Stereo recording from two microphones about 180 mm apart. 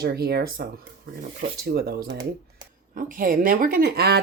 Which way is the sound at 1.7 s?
60° right (ahead or behind).